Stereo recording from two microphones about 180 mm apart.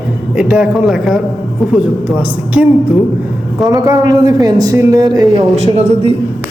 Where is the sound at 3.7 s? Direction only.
20° right (ahead or behind).